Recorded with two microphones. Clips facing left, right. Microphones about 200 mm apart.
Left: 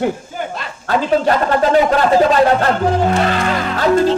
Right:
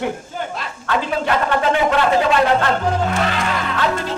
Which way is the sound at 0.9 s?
40° left (ahead or behind).